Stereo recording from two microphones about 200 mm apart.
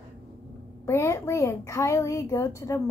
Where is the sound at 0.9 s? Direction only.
15° left (ahead or behind).